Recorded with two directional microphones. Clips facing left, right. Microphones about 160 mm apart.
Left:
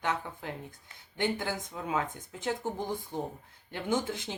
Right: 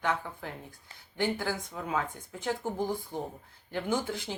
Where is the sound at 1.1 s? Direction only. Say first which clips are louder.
Right 1 dB; 20° left (ahead or behind).